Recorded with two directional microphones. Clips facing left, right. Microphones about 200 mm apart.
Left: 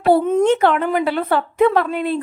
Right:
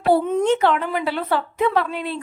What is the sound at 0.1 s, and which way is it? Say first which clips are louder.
A woman's voice: left 3 dB; 50° left (ahead or behind).